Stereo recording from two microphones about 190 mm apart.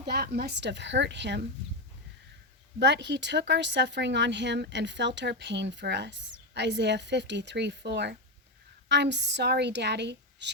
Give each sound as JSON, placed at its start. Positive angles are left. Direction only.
{"t": 0.0, "sound": "speech", "side_deg": -60}
{"t": 2.7, "sound": "speech", "side_deg": -65}